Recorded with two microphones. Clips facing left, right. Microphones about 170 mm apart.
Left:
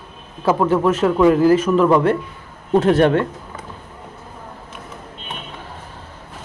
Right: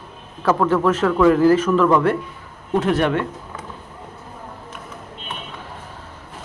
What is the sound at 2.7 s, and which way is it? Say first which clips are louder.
Speech: left 5 dB; 30° left (ahead or behind).